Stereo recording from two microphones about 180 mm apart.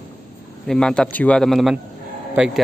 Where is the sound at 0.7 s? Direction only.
5° left (ahead or behind).